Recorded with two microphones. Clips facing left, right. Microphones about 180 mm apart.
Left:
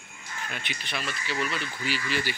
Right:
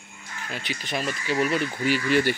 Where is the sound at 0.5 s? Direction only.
35° right (ahead or behind); by 2.4 s 55° right (ahead or behind).